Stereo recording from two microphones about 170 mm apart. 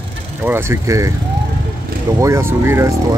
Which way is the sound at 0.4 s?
15° right (ahead or behind).